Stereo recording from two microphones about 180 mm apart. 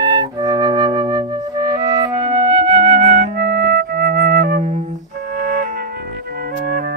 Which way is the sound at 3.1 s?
50° right (ahead or behind).